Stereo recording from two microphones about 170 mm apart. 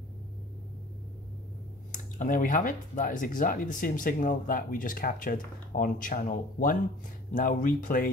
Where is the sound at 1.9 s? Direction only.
50° left (ahead or behind).